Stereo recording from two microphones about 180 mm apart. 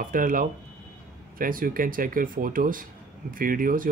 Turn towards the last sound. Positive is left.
turn(degrees=-50)  # may be behind; listen again after turning